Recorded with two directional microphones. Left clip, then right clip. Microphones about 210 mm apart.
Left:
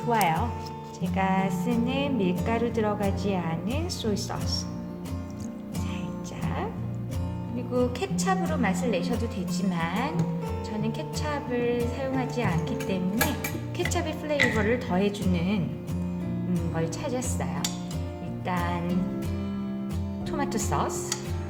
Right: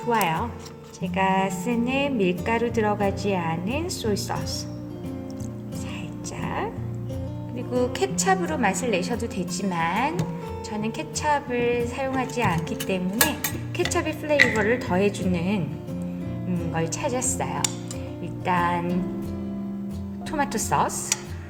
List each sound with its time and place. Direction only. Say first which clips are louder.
0.0 s a woman's voice: right 1 dB; 10° right (ahead or behind)
6.4 s music: right 5 dB; 20° right (ahead or behind)
7.7 s a woman's voice: right 3 dB; 35° right (ahead or behind)
16.7 s a woman's voice: right 5 dB; 30° right (ahead or behind)
20.3 s a woman's voice: right 5 dB; 25° right (ahead or behind)